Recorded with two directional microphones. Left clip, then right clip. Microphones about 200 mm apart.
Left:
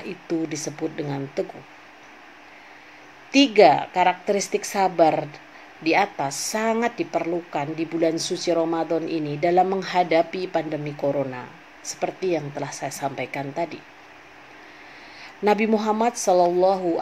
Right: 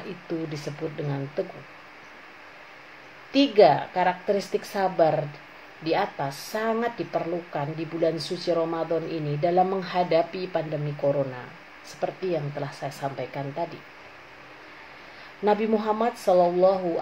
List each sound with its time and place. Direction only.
0.3 s speech: 35° left (ahead or behind)
3.3 s speech: 35° left (ahead or behind)
15.4 s speech: 35° left (ahead or behind)